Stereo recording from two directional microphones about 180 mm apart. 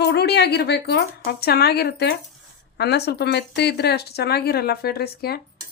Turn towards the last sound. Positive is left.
turn(degrees=60)  # may be behind; listen again after turning